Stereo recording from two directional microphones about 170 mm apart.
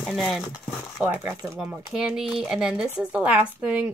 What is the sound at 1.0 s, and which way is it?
Speech, 10° right (ahead or behind).